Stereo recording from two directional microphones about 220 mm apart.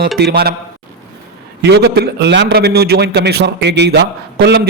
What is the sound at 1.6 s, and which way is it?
A man's voice, 50° right (ahead or behind).